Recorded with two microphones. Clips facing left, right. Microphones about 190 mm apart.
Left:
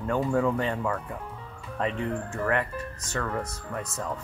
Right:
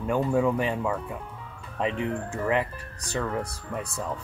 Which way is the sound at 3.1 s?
15° right (ahead or behind).